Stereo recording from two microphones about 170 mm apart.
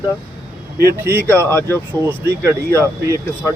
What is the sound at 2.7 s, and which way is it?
Speech, 15° right (ahead or behind).